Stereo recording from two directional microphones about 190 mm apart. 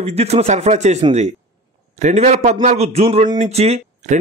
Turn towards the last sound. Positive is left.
turn(degrees=-35)  # may be behind; listen again after turning